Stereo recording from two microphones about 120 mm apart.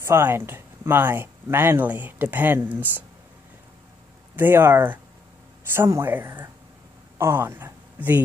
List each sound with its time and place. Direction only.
0.0 s speech: 20° right (ahead or behind)
4.4 s speech: 15° right (ahead or behind)